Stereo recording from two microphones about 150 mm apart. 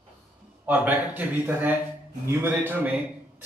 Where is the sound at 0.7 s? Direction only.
10° right (ahead or behind).